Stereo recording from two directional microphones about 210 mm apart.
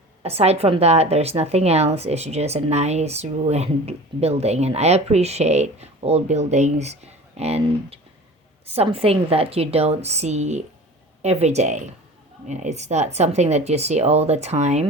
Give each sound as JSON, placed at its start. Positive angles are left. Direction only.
{"t": 0.2, "sound": "a woman's voice", "side_deg": -30}